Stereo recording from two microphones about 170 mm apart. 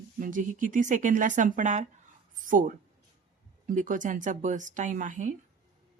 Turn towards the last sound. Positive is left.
turn(degrees=-50)  # may be behind; listen again after turning